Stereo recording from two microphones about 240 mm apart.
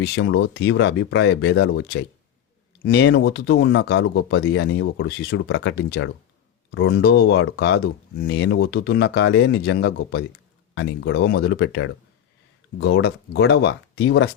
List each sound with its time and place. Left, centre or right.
0.0 s speech: left